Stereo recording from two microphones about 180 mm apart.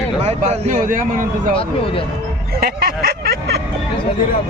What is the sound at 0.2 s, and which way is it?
Speech, 40° right (ahead or behind).